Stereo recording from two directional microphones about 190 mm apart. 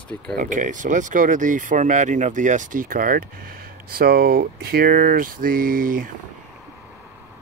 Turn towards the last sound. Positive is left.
turn(degrees=-45)  # may be behind; listen again after turning